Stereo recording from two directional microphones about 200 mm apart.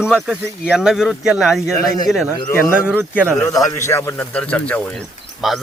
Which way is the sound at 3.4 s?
15° left (ahead or behind).